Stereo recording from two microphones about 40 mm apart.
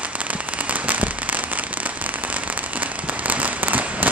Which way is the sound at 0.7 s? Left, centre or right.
Right.